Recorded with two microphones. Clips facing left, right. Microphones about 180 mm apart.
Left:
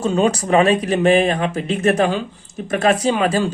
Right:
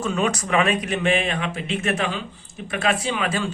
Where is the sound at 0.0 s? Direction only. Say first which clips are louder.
Left 6 dB; 30° left (ahead or behind).